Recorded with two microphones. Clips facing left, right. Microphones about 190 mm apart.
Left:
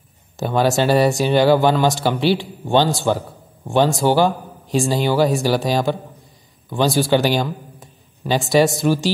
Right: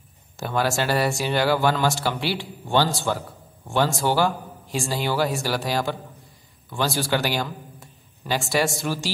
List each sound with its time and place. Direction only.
0.4 s speech: 20° left (ahead or behind)
7.0 s a man's voice: 20° left (ahead or behind)